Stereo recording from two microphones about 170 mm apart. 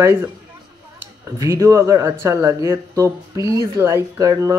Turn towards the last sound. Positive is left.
turn(degrees=-20)  # may be behind; listen again after turning